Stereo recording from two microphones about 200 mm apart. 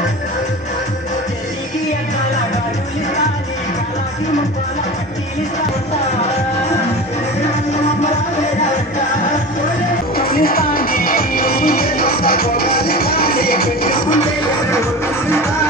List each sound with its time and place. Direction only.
10.1 s music: 45° left (ahead or behind)